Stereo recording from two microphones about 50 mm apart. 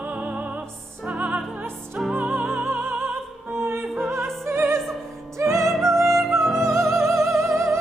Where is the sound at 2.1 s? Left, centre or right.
Right.